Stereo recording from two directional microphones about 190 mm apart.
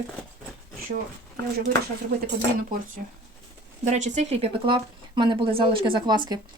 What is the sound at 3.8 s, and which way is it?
A woman's voice, 40° right (ahead or behind).